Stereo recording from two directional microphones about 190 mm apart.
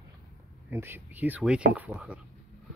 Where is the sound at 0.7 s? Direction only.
15° right (ahead or behind).